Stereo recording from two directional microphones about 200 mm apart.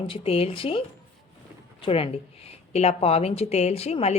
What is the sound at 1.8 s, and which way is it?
A woman's voice, 30° left (ahead or behind).